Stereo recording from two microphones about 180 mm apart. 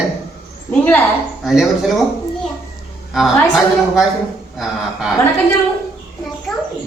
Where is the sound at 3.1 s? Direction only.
Centre (ahead or behind).